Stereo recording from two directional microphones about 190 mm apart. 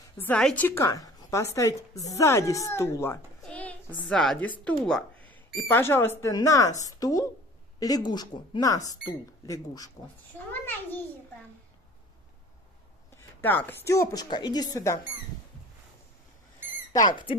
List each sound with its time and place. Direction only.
0.2 s a woman's voice: 5° left (ahead or behind)
10.6 s a sound: 10° left (ahead or behind)
13.1 s a woman's voice: 10° left (ahead or behind)
17.1 s speech: 25° left (ahead or behind)